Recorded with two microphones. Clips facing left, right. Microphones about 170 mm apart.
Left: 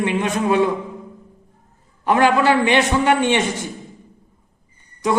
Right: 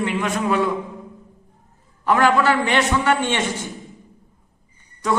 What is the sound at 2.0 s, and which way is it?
A man's voice, 20° left (ahead or behind).